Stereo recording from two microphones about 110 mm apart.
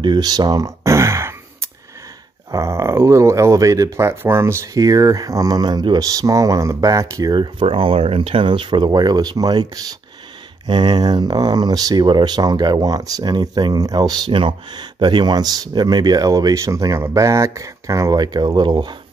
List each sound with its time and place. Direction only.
0.0 s a sound: 40° right (ahead or behind); by 1.7 s 25° right (ahead or behind)
2.5 s speech: 25° right (ahead or behind)
7.3 s speech: 50° right (ahead or behind)